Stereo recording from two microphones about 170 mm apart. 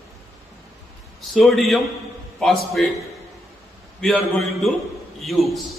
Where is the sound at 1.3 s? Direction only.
Centre (ahead or behind).